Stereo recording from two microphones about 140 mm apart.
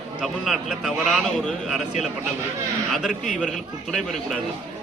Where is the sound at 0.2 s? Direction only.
Centre (ahead or behind).